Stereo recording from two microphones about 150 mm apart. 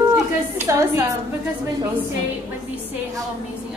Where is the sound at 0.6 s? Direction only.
20° right (ahead or behind).